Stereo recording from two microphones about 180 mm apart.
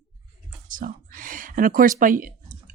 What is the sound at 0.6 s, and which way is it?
Whispering, 50° right (ahead or behind).